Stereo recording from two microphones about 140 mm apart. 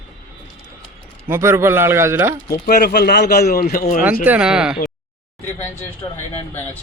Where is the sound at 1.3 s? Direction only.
20° right (ahead or behind).